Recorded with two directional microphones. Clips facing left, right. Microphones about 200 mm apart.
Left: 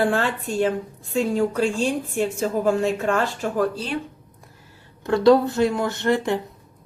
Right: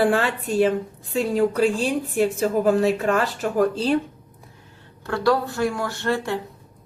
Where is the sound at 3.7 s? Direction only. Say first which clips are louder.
Right 7 dB; 35° right (ahead or behind).